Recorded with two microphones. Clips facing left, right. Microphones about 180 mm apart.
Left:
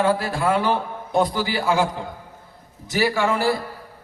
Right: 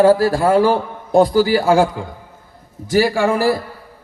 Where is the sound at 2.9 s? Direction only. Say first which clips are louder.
Right 6 dB; 45° right (ahead or behind).